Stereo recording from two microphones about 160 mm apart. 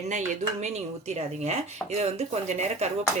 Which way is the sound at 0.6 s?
45° right (ahead or behind).